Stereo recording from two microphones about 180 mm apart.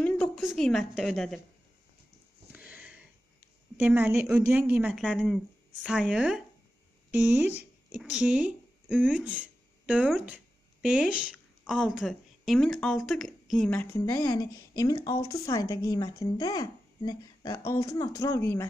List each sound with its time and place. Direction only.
0.0 s a sound: 5° left (ahead or behind)
2.5 s sniff: 10° right (ahead or behind)
3.7 s a woman's voice: 10° right (ahead or behind); by 18.7 s 15° left (ahead or behind)